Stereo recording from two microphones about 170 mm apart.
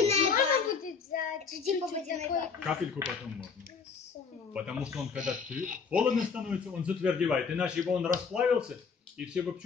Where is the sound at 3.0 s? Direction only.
15° right (ahead or behind).